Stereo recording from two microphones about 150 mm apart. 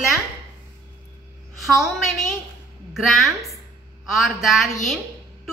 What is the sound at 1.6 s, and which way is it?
A woman's voice, centre (ahead or behind).